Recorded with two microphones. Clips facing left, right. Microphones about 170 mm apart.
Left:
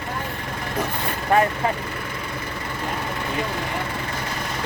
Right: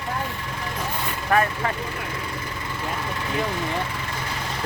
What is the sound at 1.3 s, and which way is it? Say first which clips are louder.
Speech: left 2 dB; 25° left (ahead or behind).